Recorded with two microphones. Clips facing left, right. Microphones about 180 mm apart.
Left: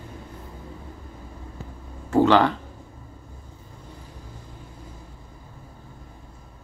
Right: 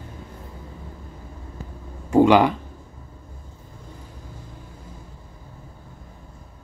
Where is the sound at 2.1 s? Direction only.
10° right (ahead or behind).